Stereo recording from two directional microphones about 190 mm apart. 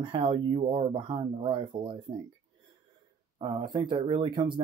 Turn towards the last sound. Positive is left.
turn(degrees=-25)  # may be behind; listen again after turning